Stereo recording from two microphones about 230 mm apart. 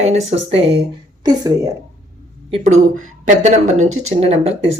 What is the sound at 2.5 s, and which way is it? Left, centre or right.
A woman's voice, right.